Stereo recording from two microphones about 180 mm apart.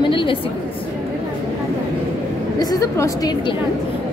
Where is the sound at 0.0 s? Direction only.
30° left (ahead or behind).